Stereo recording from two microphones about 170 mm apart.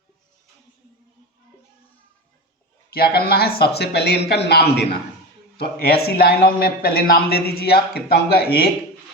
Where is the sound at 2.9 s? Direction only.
65° left (ahead or behind).